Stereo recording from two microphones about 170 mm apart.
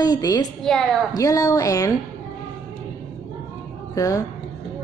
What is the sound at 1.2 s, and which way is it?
Speech, 20° left (ahead or behind).